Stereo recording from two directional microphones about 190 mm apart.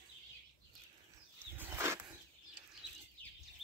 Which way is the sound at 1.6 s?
10° right (ahead or behind).